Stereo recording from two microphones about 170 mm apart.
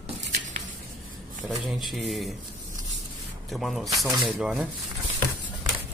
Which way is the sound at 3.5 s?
Centre (ahead or behind).